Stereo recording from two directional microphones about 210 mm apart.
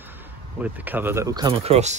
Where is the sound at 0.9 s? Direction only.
10° right (ahead or behind); by 2.0 s 30° right (ahead or behind).